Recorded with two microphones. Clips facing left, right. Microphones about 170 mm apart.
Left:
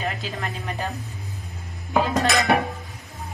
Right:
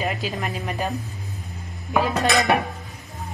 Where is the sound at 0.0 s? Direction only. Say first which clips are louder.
Right 3 dB; 15° right (ahead or behind).